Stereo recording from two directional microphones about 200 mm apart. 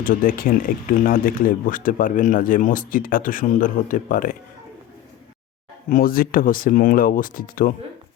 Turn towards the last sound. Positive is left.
turn(degrees=45)  # may be behind; listen again after turning